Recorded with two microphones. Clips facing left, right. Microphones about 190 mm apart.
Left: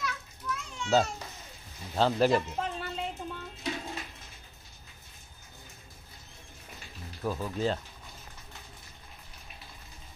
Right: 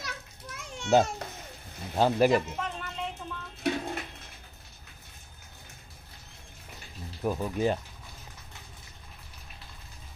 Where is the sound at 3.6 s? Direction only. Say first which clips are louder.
Right 6 dB; 60° right (ahead or behind).